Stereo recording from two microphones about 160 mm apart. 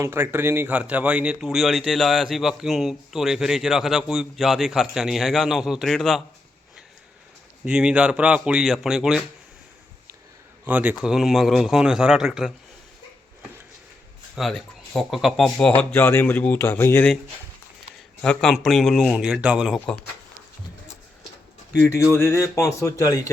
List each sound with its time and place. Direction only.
0.0 s speech: 15° right (ahead or behind); by 6.2 s centre (ahead or behind)
7.6 s speech: 5° right (ahead or behind)
10.7 s speech: 10° right (ahead or behind)
14.3 s speech: centre (ahead or behind)
18.2 s speech: 5° left (ahead or behind)
21.8 s speech: 15° left (ahead or behind)